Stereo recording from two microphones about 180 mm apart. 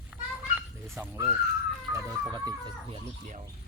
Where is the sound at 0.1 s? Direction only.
5° right (ahead or behind).